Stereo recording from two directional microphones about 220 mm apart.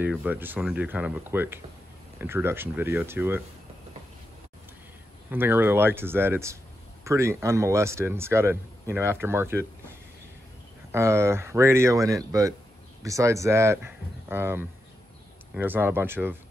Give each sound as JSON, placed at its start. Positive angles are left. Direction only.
{"t": 0.0, "sound": "speech", "side_deg": -5}
{"t": 5.3, "sound": "speech", "side_deg": -10}
{"t": 10.9, "sound": "speech", "side_deg": -10}